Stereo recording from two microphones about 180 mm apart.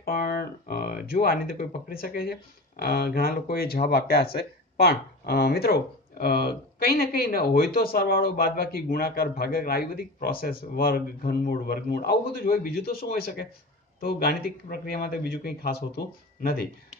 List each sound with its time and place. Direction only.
0.0 s speech: 55° left (ahead or behind)